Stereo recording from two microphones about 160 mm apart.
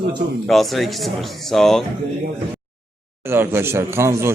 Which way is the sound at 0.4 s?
Centre (ahead or behind).